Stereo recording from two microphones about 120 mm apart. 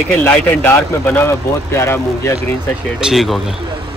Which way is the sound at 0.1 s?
10° left (ahead or behind).